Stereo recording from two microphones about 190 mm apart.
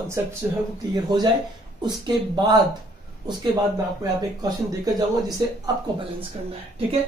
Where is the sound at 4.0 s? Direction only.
20° right (ahead or behind).